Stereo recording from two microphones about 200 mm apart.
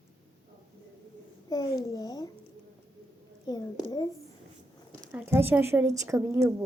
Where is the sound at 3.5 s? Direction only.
20° left (ahead or behind).